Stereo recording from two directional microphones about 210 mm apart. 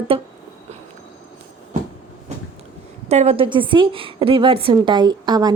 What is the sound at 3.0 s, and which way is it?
A woman's voice, 30° right (ahead or behind).